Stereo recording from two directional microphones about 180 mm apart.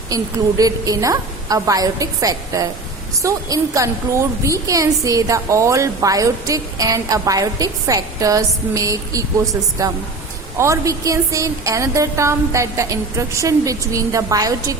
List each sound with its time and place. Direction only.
0.1 s a woman's voice: 20° right (ahead or behind)